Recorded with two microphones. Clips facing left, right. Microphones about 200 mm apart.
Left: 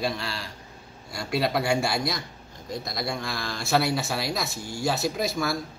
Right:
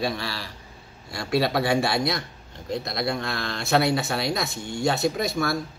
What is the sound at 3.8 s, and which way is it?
Speech, centre (ahead or behind).